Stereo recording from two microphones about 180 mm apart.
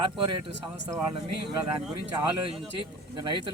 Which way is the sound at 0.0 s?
25° right (ahead or behind).